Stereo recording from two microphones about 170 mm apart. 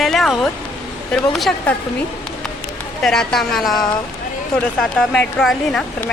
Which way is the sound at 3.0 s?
5° left (ahead or behind).